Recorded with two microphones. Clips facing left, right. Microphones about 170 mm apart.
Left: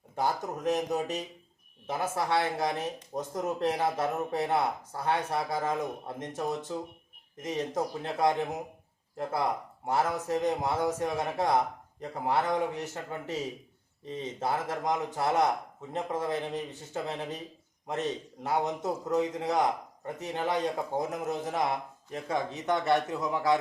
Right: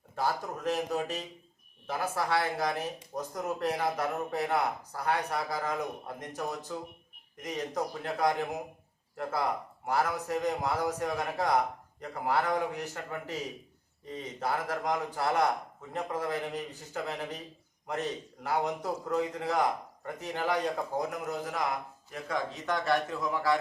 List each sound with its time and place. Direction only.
0.2 s speech: 20° left (ahead or behind)
9.8 s speech: 25° left (ahead or behind)